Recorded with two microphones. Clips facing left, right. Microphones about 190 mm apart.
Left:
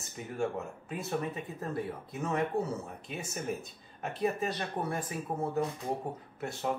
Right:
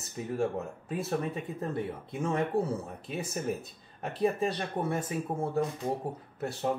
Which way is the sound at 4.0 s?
30° right (ahead or behind).